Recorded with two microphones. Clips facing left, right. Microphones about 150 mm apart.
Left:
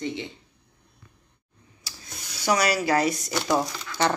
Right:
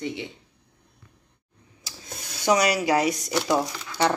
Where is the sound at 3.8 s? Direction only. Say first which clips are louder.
Right 1 dB; 10° right (ahead or behind).